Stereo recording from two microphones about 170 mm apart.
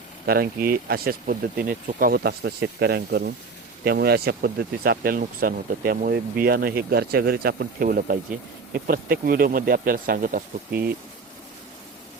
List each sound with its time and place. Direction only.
0.3 s speech: 60° right (ahead or behind)